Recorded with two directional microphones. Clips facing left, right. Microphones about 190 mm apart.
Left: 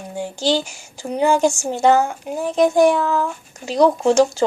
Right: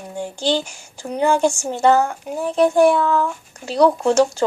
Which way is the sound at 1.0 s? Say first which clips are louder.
Left 1 dB; 10° left (ahead or behind).